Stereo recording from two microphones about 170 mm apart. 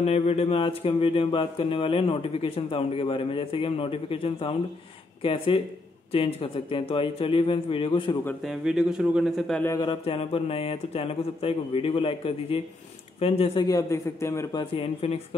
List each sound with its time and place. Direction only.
0.0 s speech: 40° left (ahead or behind)
8.5 s a man's voice: centre (ahead or behind)
9.8 s speech: 30° left (ahead or behind)
13.7 s a man's voice: 20° left (ahead or behind)
14.6 s speech: 35° left (ahead or behind)